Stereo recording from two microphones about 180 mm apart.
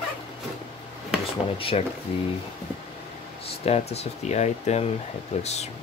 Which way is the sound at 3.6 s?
35° left (ahead or behind).